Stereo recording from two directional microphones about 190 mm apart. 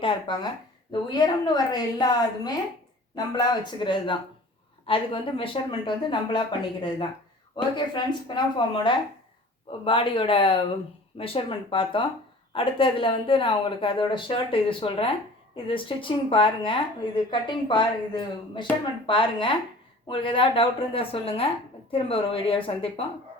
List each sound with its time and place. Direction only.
0.0 s a woman's voice: 25° left (ahead or behind)
7.5 s a woman's voice: 25° left (ahead or behind)